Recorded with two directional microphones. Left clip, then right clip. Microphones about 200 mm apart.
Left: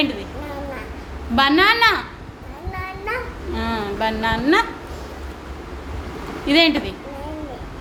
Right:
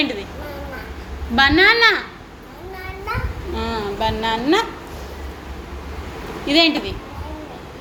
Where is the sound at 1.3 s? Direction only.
10° left (ahead or behind).